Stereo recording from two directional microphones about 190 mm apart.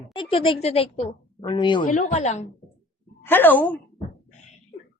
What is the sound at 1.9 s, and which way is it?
Speech, 40° left (ahead or behind).